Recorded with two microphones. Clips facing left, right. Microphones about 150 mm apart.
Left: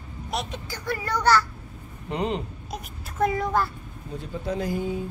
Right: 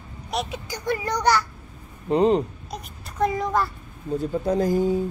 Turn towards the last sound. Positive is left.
turn(degrees=-40)  # may be behind; listen again after turning